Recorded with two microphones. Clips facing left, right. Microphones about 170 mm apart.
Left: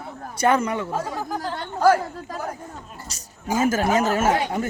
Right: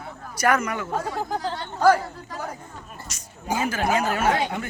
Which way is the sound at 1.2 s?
20° right (ahead or behind).